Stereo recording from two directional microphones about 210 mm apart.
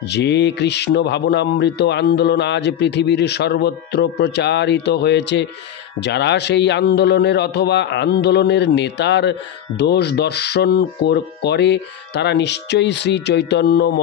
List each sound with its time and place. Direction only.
0.1 s a man's voice: 55° left (ahead or behind)